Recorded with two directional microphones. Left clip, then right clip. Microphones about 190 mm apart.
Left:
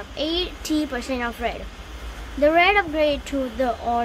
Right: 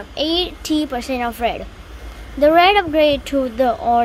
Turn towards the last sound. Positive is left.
turn(degrees=-20)  # may be behind; listen again after turning